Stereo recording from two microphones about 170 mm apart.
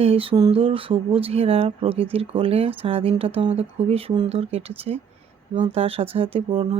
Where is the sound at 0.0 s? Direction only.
35° right (ahead or behind).